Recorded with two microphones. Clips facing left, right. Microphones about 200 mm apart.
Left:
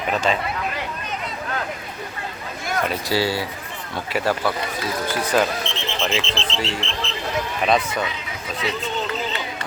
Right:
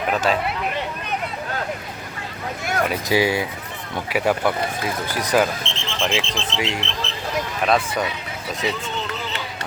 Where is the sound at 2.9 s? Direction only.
15° right (ahead or behind).